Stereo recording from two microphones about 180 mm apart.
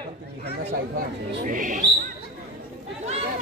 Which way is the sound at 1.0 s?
50° right (ahead or behind).